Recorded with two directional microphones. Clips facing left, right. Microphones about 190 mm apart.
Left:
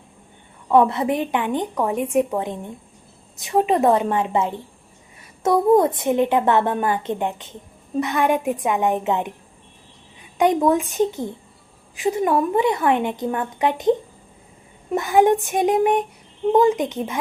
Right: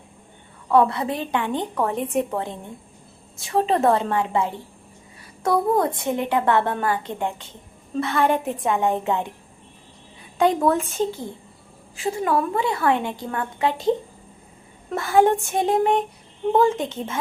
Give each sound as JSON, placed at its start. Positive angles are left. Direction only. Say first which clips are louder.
{"t": 0.7, "sound": "a woman's voice", "louder": "left 2 dB", "side_deg": 20}
{"t": 5.7, "sound": "a woman's voice", "louder": "left 5 dB", "side_deg": 20}
{"t": 10.3, "sound": "a woman's voice", "louder": "left 2 dB", "side_deg": 15}